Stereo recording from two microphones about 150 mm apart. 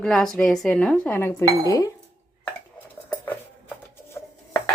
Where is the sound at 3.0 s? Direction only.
10° left (ahead or behind).